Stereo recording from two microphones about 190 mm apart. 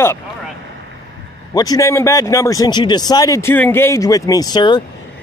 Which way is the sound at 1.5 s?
20° left (ahead or behind).